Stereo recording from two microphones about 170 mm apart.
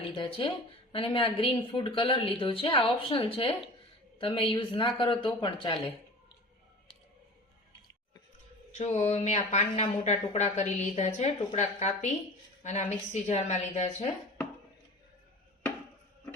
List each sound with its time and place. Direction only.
0.0 s speech: 30° left (ahead or behind)
8.7 s a woman's voice: 40° left (ahead or behind)